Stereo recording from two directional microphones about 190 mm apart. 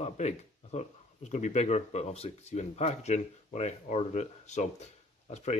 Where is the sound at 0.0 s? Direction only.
35° left (ahead or behind).